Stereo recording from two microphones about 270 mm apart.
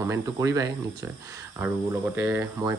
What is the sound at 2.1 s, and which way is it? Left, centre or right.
Speech, centre.